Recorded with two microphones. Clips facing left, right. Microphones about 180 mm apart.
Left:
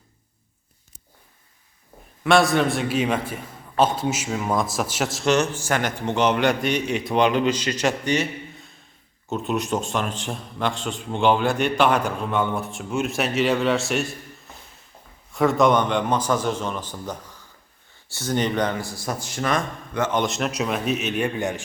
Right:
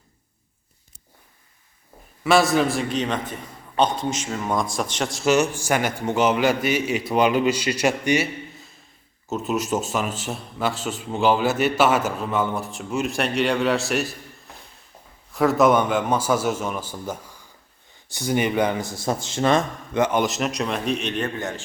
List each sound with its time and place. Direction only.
2.2 s a man's voice: centre (ahead or behind)
18.8 s a man's voice: 20° right (ahead or behind)
20.1 s a man's voice: 5° right (ahead or behind); by 21.6 s 15° left (ahead or behind)